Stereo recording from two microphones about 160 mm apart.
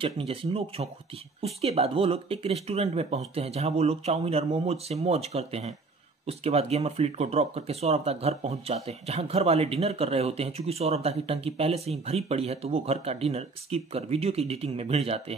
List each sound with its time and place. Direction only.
0.0 s speech: 35° right (ahead or behind)